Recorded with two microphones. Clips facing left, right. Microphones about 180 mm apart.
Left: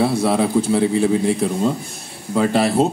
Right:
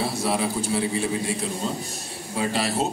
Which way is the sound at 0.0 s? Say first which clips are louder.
Left 8 dB; 60° left (ahead or behind).